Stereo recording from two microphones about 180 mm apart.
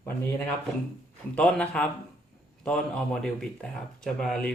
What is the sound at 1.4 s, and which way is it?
Speech, 5° left (ahead or behind).